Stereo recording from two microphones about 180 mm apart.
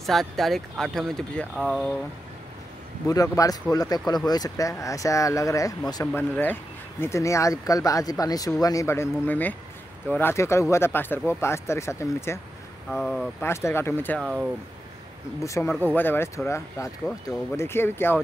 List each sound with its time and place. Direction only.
0.0 s speech: centre (ahead or behind)
3.1 s speech: 20° left (ahead or behind)
6.3 s speech: 10° left (ahead or behind)
12.9 s speech: centre (ahead or behind)
13.4 s speech: 15° left (ahead or behind)
15.4 s speech: 15° left (ahead or behind)